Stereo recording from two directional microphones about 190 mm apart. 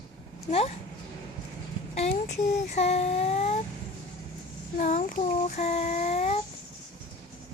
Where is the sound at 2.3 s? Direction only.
35° left (ahead or behind).